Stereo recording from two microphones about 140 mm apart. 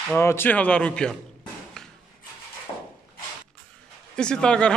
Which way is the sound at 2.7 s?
20° left (ahead or behind).